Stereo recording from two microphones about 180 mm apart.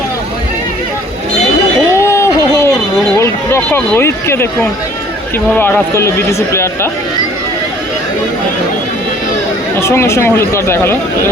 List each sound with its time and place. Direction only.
2.0 s a sound: 15° left (ahead or behind)
3.2 s speech: 15° left (ahead or behind)
5.5 s speech: 15° left (ahead or behind)
9.8 s speech: 15° left (ahead or behind)